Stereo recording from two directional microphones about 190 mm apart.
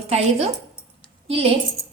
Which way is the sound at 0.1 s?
35° right (ahead or behind).